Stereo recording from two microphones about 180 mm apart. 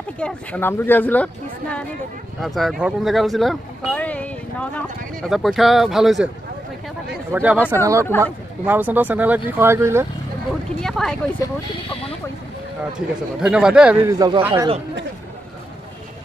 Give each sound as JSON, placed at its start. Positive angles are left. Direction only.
{"t": 0.2, "sound": "speech", "side_deg": 10}
{"t": 7.3, "sound": "speech", "side_deg": -10}
{"t": 10.8, "sound": "speech", "side_deg": 5}
{"t": 12.9, "sound": "speech", "side_deg": -5}
{"t": 14.0, "sound": "speech", "side_deg": -20}